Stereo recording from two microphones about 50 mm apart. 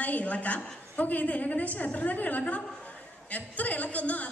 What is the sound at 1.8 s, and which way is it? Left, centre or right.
A woman's voice, left.